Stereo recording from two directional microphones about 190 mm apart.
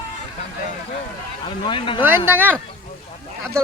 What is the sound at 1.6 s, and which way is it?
Speech, 25° left (ahead or behind).